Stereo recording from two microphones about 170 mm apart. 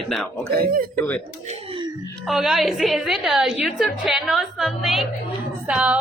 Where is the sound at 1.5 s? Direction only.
30° right (ahead or behind).